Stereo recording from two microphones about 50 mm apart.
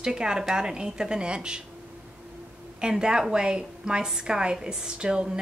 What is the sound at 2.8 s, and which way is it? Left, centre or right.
A woman's voice, centre.